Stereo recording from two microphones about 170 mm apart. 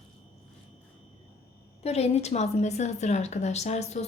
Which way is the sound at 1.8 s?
35° left (ahead or behind).